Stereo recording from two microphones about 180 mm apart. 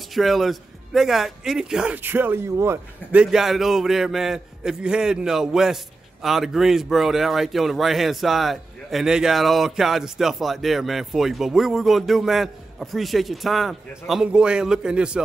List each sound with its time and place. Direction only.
0.1 s speech: centre (ahead or behind)